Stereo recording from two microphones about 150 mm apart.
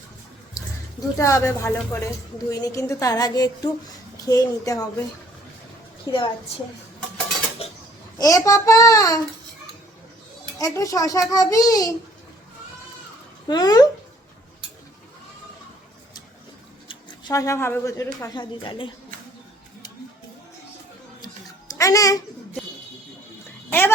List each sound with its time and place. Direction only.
0.5 s speech: 20° left (ahead or behind)
6.1 s speech: 35° left (ahead or behind)
7.6 s a sound: 40° left (ahead or behind)
8.2 s speech: 20° left (ahead or behind)
10.6 s speech: 20° left (ahead or behind)
13.5 s speech: 25° left (ahead or behind)
16.9 s speech: 25° left (ahead or behind)
18.3 s speech: 30° left (ahead or behind)
21.7 s a child's voice: 20° left (ahead or behind)